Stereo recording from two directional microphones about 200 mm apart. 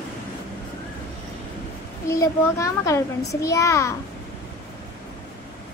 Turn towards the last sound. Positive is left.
turn(degrees=15)  # may be behind; listen again after turning